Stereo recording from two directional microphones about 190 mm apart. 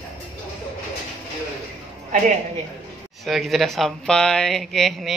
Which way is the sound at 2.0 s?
40° right (ahead or behind).